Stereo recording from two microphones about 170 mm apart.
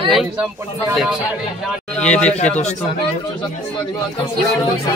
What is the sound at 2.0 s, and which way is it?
Speech, 5° left (ahead or behind).